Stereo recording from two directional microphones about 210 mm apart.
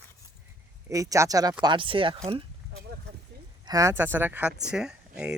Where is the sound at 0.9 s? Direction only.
15° right (ahead or behind).